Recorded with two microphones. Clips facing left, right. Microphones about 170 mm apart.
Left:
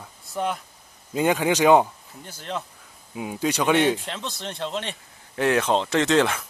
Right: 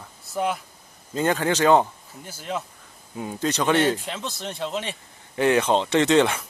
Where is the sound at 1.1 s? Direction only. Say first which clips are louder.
Left 1 dB; 15° left (ahead or behind).